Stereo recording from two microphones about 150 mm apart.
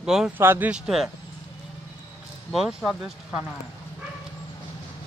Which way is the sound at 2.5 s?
5° right (ahead or behind).